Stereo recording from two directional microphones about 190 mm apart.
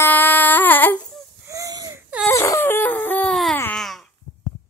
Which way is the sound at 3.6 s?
5° left (ahead or behind).